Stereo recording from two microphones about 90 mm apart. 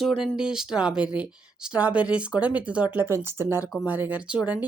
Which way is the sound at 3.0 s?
30° right (ahead or behind).